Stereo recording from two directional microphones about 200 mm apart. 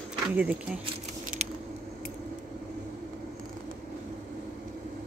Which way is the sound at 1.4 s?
35° right (ahead or behind).